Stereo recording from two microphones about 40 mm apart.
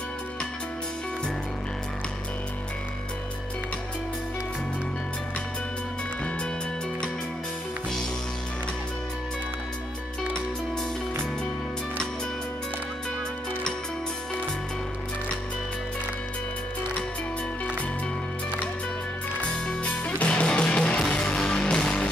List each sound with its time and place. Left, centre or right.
20.2 s music: left
20.4 s music: left